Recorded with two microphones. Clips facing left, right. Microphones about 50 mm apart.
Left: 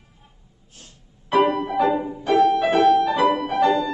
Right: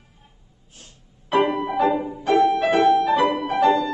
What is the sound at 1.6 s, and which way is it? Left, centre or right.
Music, right.